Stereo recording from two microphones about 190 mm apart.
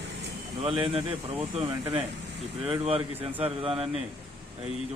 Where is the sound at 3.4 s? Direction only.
30° right (ahead or behind).